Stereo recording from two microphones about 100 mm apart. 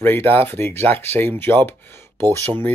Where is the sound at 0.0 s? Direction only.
20° left (ahead or behind).